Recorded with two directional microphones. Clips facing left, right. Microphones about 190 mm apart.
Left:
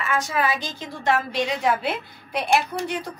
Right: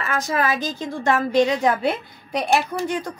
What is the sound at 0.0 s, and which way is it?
Speech, 40° right (ahead or behind).